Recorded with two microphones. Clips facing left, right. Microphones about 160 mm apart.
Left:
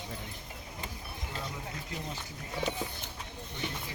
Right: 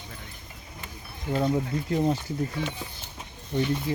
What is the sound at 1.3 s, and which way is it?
Speech, 50° right (ahead or behind).